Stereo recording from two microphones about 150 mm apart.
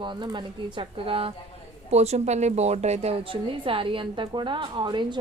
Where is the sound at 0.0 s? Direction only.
30° right (ahead or behind).